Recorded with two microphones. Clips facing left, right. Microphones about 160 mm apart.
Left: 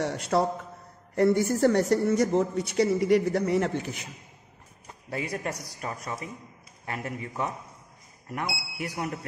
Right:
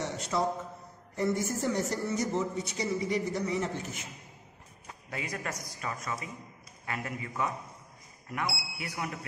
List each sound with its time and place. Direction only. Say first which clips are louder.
0.0 s a sound: left 7 dB; 60° left (ahead or behind)
1.1 s speech: left 8 dB; 65° left (ahead or behind)
5.1 s a man's voice: left 5 dB; 30° left (ahead or behind)
8.3 s a man's voice: left 1 dB; 40° left (ahead or behind)